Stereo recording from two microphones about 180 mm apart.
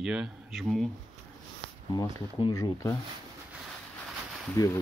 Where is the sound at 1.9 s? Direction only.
20° left (ahead or behind).